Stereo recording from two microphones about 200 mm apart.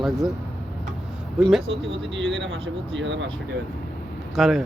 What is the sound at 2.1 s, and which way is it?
Speech, 65° right (ahead or behind).